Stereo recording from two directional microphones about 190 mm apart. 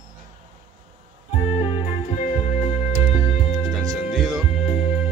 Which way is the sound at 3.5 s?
Centre (ahead or behind).